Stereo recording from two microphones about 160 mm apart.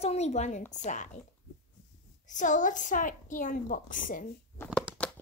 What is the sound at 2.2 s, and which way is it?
A woman's voice, 50° left (ahead or behind).